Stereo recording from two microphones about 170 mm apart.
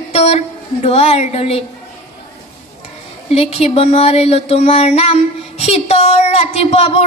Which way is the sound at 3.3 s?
40° left (ahead or behind).